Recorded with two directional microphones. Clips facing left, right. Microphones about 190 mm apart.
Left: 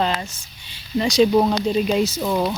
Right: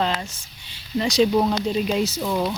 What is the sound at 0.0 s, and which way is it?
Speech, 10° left (ahead or behind).